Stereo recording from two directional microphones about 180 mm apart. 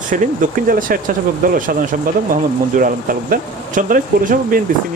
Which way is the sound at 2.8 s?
45° right (ahead or behind).